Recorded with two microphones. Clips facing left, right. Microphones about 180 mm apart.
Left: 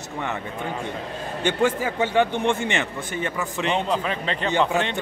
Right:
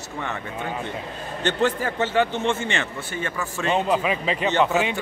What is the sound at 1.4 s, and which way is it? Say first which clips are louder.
A man's voice: left 1 dB; 10° left (ahead or behind).